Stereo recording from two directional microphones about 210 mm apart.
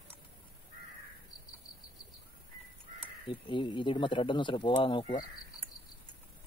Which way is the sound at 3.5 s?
20° left (ahead or behind).